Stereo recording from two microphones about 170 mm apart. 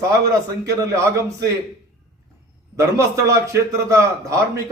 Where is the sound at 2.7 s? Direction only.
20° right (ahead or behind).